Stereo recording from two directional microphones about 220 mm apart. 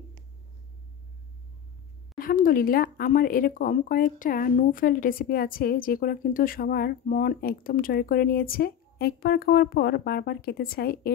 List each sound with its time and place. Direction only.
2.1 s speech: 40° left (ahead or behind)